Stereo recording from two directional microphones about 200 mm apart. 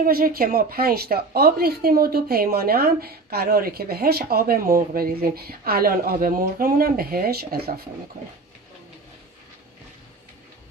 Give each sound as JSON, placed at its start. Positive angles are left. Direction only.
{"t": 0.0, "sound": "a woman's voice", "side_deg": -45}